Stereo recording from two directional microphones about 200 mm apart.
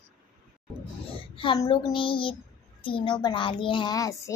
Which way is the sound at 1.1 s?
25° left (ahead or behind).